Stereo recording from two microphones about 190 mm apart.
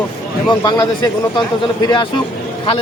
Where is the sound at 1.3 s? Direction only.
20° left (ahead or behind).